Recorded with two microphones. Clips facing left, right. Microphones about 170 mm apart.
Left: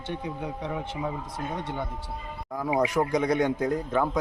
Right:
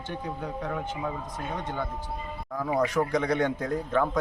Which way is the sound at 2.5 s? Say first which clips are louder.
Left 1 dB; 10° left (ahead or behind).